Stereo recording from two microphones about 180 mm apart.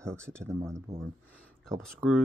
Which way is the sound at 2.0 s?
10° right (ahead or behind).